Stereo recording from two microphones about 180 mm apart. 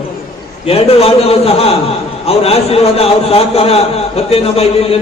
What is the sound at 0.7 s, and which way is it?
A man's voice, 35° left (ahead or behind).